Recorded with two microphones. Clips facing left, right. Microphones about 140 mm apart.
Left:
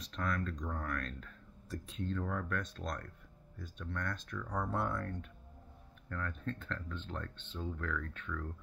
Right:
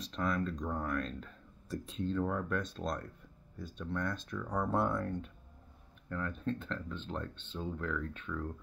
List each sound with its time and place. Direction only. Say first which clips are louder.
0.0 s speech: right 3 dB; 25° right (ahead or behind)